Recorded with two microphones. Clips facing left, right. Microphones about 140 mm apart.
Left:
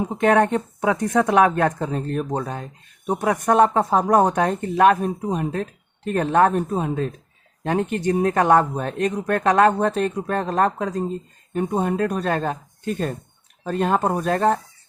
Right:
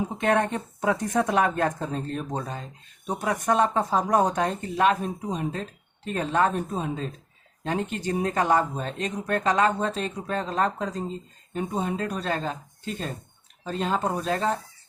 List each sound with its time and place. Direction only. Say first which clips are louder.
0.2 s speech: left 7 dB; 60° left (ahead or behind)